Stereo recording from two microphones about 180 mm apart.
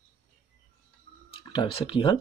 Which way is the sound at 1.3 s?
30° left (ahead or behind).